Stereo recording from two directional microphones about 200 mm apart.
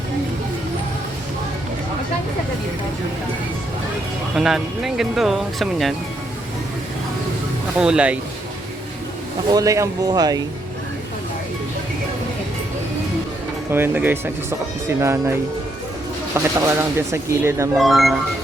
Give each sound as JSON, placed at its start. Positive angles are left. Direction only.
{"t": 4.4, "sound": "speech", "side_deg": 0}
{"t": 7.8, "sound": "speech", "side_deg": -5}
{"t": 9.5, "sound": "speech", "side_deg": -15}
{"t": 13.7, "sound": "speech", "side_deg": -10}
{"t": 16.3, "sound": "speech", "side_deg": -15}
{"t": 17.7, "sound": "speech", "side_deg": 0}